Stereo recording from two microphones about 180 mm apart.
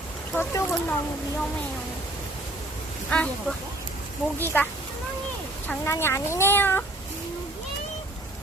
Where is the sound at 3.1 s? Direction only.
10° left (ahead or behind).